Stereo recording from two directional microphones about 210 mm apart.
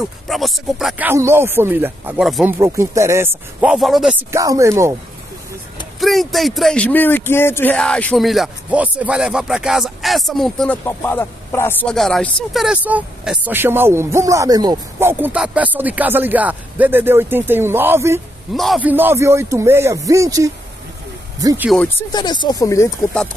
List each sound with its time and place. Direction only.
0.0 s speech: centre (ahead or behind)
2.6 s speech: 15° right (ahead or behind)
5.9 s speech: centre (ahead or behind)
18.5 s speech: centre (ahead or behind); by 21.6 s 15° right (ahead or behind)
22.1 s speech: 20° left (ahead or behind)